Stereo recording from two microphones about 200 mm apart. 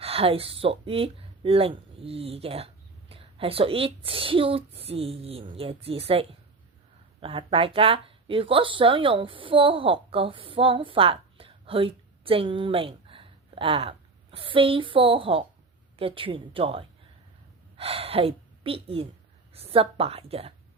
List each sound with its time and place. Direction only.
0.0 s a woman's voice: 30° right (ahead or behind)